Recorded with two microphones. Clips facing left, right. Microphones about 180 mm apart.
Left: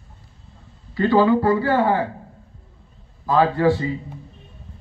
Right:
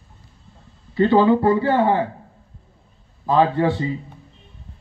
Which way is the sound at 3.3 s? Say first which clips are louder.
Even; 20° right (ahead or behind).